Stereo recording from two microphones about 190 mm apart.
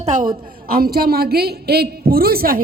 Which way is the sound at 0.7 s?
50° right (ahead or behind).